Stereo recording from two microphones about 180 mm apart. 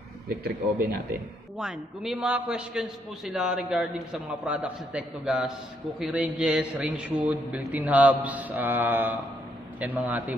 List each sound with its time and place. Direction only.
0.3 s a man's voice: 60° right (ahead or behind)
1.6 s a man's voice: 5° right (ahead or behind)